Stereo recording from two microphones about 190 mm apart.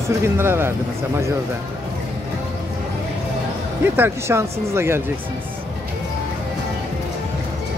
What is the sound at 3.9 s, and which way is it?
Speech, 10° right (ahead or behind).